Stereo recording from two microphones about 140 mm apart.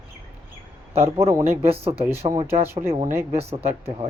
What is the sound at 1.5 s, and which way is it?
Speech, 45° right (ahead or behind).